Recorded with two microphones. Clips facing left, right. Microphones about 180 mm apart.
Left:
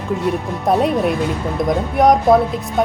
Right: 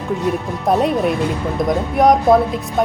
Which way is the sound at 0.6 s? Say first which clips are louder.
Even; centre (ahead or behind).